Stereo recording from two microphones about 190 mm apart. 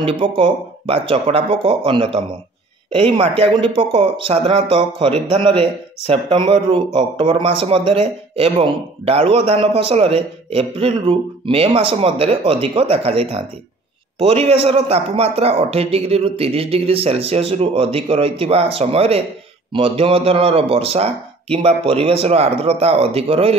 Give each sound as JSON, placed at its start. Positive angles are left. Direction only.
{"t": 0.0, "sound": "a man's voice", "side_deg": -30}